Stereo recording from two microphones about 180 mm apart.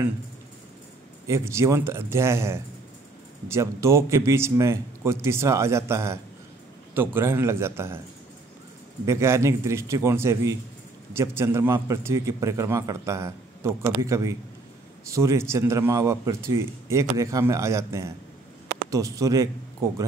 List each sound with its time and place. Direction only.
1.2 s speech: 15° right (ahead or behind)
9.0 s speech: 15° right (ahead or behind)